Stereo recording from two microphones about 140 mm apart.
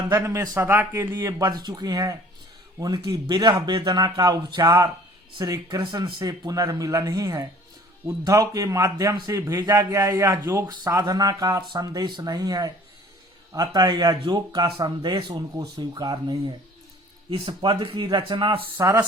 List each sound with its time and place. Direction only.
0.1 s a man's voice: 25° right (ahead or behind)
18.8 s a man's voice: 20° right (ahead or behind)